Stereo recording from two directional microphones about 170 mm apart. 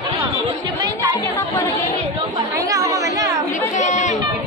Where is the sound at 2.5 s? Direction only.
20° right (ahead or behind).